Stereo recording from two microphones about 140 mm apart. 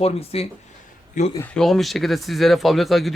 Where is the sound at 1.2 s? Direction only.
60° left (ahead or behind).